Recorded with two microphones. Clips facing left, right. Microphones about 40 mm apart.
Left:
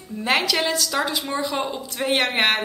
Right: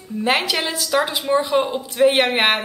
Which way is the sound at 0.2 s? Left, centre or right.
Centre.